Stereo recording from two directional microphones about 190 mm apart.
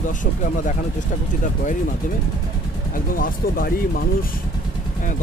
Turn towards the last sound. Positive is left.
turn(degrees=50)  # may be behind; listen again after turning